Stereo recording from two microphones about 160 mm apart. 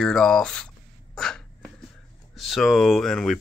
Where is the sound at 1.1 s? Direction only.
5° left (ahead or behind).